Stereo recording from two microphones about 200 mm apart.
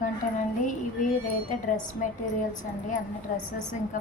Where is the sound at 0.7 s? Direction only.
40° left (ahead or behind).